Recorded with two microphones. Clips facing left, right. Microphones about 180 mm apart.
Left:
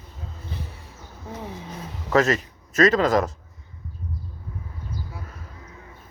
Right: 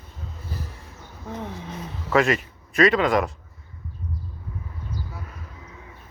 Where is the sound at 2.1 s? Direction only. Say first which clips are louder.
Even; 40° left (ahead or behind).